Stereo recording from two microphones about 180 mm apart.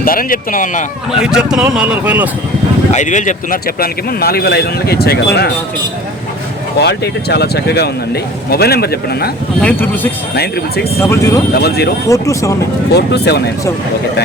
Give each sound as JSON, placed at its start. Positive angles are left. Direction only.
{"t": 0.0, "sound": "speech", "side_deg": 50}
{"t": 1.1, "sound": "speech", "side_deg": -5}
{"t": 2.9, "sound": "speech", "side_deg": 40}
{"t": 6.7, "sound": "speech", "side_deg": 65}
{"t": 9.6, "sound": "speech", "side_deg": 10}
{"t": 10.3, "sound": "speech", "side_deg": 65}
{"t": 11.0, "sound": "speech", "side_deg": 15}
{"t": 11.5, "sound": "speech", "side_deg": 60}
{"t": 12.0, "sound": "speech", "side_deg": 15}
{"t": 12.9, "sound": "speech", "side_deg": 65}